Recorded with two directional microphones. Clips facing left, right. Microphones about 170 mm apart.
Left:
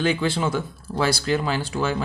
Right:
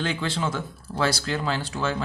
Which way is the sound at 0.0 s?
10° left (ahead or behind).